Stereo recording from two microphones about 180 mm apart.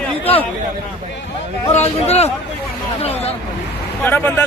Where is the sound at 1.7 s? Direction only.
35° left (ahead or behind).